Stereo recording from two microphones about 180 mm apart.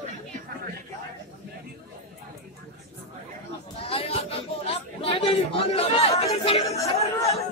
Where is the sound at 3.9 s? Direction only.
30° left (ahead or behind).